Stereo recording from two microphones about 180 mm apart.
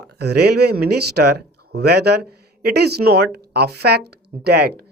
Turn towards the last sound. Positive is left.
turn(degrees=-60)  # may be behind; listen again after turning